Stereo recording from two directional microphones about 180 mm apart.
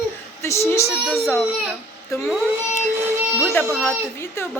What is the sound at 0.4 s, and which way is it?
Speech, 15° left (ahead or behind).